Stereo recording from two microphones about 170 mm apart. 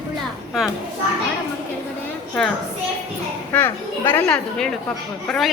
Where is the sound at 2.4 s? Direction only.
Centre (ahead or behind).